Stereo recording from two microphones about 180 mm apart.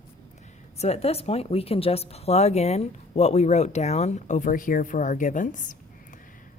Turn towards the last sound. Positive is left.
turn(degrees=45)  # may be behind; listen again after turning